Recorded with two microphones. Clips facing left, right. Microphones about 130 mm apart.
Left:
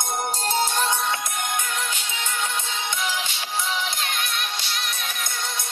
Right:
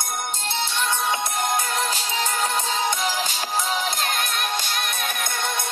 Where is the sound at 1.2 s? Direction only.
30° right (ahead or behind).